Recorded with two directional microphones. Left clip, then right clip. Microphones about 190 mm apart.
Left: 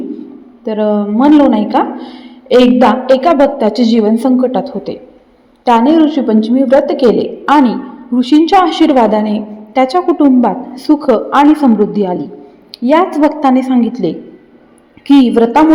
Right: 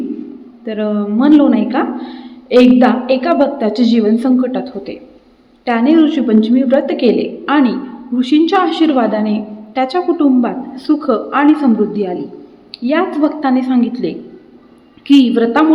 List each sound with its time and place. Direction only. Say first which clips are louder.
0.6 s a woman's voice: left 5 dB; 20° left (ahead or behind)
6.1 s a woman's voice: left 1 dB; 10° left (ahead or behind)